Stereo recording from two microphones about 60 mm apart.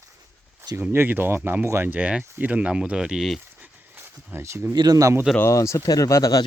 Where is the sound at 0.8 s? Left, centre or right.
Right.